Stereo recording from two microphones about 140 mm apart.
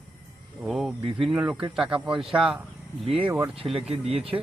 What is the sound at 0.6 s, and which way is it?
Speech, 5° right (ahead or behind).